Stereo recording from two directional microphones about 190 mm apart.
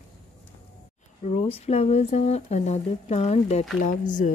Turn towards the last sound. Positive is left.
turn(degrees=40)  # may be behind; listen again after turning